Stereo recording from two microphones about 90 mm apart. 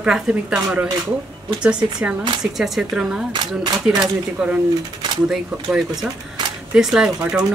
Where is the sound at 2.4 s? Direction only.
5° right (ahead or behind).